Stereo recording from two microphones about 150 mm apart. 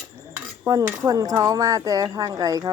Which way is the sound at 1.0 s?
25° right (ahead or behind).